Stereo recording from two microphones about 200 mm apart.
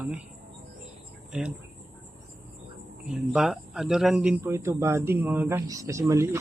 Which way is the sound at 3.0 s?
5° right (ahead or behind).